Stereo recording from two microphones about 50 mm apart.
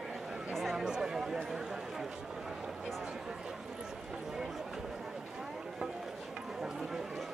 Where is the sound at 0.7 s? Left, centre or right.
Centre.